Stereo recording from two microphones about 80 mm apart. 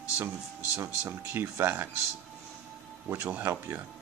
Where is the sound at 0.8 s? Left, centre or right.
Right.